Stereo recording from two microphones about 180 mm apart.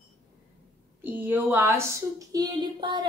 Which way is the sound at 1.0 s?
10° right (ahead or behind).